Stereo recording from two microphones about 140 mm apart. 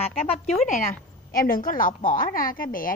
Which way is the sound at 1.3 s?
90° left.